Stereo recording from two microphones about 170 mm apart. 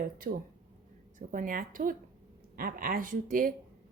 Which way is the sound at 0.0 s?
55° right (ahead or behind).